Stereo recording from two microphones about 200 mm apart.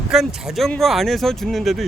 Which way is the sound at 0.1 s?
Centre (ahead or behind).